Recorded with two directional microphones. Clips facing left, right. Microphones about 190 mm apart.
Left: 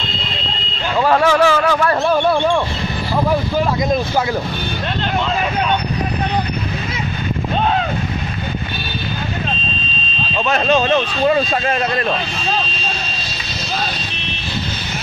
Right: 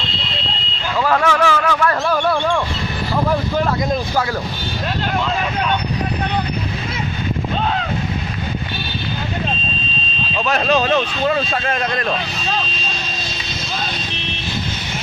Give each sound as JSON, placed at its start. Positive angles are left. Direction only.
{"t": 0.9, "sound": "a sound", "side_deg": 30}
{"t": 10.3, "sound": "speech", "side_deg": 0}
{"t": 11.2, "sound": "speech", "side_deg": 15}